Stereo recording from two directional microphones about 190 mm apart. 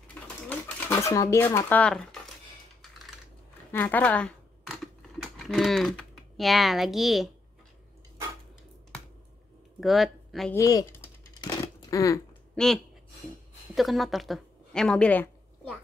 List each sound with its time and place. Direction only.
0.5 s a sound: 15° left (ahead or behind)
3.7 s speech: 10° left (ahead or behind)
9.8 s speech: centre (ahead or behind)
10.5 s speech: 15° left (ahead or behind)
11.4 s a sound: 20° left (ahead or behind)
12.5 s a woman's voice: centre (ahead or behind)